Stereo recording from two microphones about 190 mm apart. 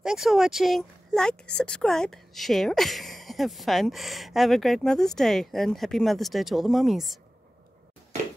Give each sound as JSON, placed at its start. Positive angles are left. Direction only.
{"t": 0.0, "sound": "a woman's voice", "side_deg": 0}